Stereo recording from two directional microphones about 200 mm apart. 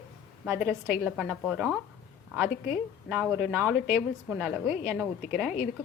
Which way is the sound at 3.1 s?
5° right (ahead or behind).